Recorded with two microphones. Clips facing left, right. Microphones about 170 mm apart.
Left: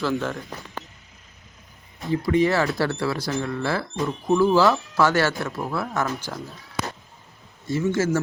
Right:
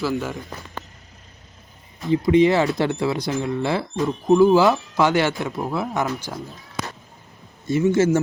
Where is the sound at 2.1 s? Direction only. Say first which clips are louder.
Right 4 dB; 20° right (ahead or behind).